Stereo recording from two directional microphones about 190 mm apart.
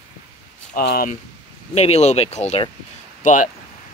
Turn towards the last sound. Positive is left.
turn(degrees=40)  # may be behind; listen again after turning